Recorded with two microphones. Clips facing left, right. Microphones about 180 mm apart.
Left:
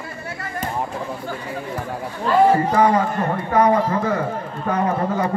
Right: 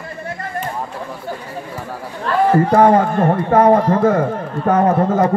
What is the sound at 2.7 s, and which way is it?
Speech, 50° right (ahead or behind).